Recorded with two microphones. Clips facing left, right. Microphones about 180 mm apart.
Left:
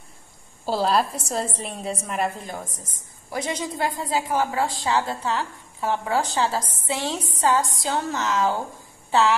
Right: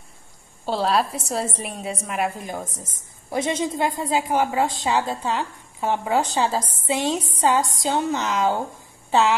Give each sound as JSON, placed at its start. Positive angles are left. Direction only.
{"t": 0.7, "sound": "a woman's voice", "side_deg": 0}